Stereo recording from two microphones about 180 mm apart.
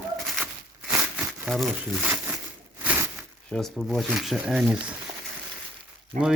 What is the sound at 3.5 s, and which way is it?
Speech, centre (ahead or behind).